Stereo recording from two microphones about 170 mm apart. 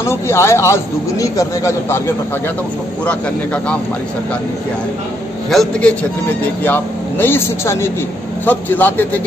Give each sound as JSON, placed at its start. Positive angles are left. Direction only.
{"t": 0.0, "sound": "a man's voice", "side_deg": 15}
{"t": 5.5, "sound": "a man's voice", "side_deg": 5}